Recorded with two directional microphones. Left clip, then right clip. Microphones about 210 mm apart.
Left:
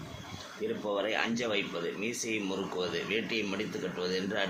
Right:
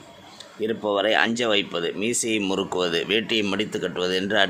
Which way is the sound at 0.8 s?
50° right (ahead or behind).